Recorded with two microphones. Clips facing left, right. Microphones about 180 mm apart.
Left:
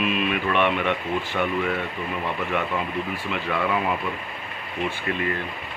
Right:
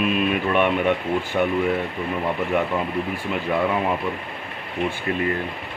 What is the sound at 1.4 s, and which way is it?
Speech, 25° right (ahead or behind).